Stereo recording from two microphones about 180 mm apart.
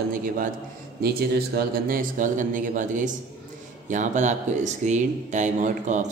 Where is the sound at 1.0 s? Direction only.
60° right (ahead or behind).